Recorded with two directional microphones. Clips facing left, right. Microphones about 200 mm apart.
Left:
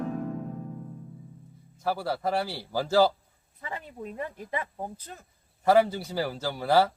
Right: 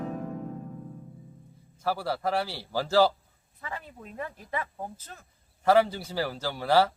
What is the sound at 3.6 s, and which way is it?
A woman's voice, 20° left (ahead or behind).